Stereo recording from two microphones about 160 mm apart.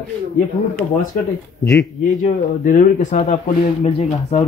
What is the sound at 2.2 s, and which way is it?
Speech, 55° left (ahead or behind).